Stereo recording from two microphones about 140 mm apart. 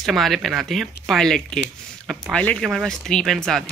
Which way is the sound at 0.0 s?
Centre (ahead or behind).